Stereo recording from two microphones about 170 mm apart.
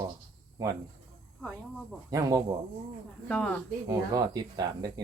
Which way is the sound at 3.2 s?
5° left (ahead or behind).